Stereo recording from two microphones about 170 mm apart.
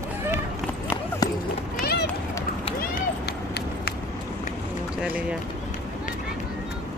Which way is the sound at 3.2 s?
70° left (ahead or behind).